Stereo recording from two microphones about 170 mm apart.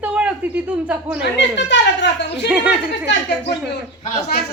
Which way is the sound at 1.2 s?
90° left.